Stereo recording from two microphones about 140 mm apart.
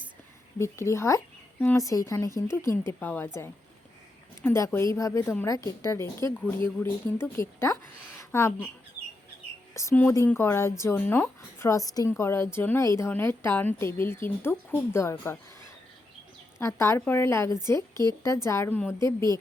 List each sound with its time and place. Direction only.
0.6 s a woman's voice: 20° left (ahead or behind)
9.7 s a woman's voice: 15° left (ahead or behind)
16.6 s speech: 20° left (ahead or behind)